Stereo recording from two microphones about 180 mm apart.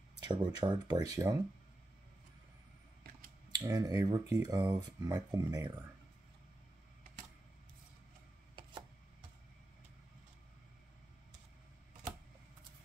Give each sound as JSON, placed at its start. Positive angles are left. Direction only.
{"t": 0.2, "sound": "speech", "side_deg": -25}
{"t": 3.0, "sound": "scissors", "side_deg": -55}
{"t": 3.5, "sound": "speech", "side_deg": -20}